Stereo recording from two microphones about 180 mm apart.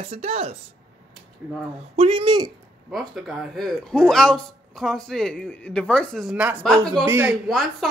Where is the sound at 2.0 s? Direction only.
30° right (ahead or behind).